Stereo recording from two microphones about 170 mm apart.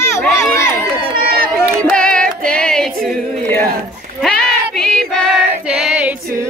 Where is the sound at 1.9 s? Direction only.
5° left (ahead or behind).